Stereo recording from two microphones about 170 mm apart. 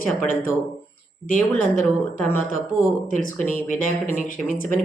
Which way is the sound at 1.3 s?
50° left (ahead or behind).